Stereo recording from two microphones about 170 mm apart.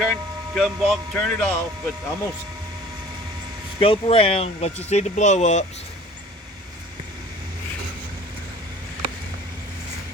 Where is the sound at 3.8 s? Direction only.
35° left (ahead or behind).